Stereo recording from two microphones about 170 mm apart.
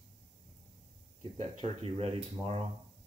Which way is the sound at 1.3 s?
35° right (ahead or behind).